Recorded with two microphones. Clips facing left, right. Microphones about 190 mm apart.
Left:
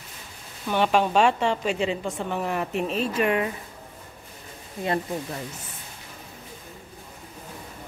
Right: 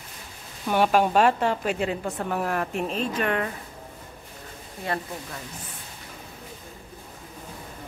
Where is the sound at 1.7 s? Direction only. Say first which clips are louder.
Left 1 dB; 55° right (ahead or behind).